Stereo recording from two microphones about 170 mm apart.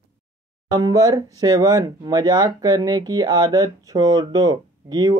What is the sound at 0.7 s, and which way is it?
Speech, 20° right (ahead or behind).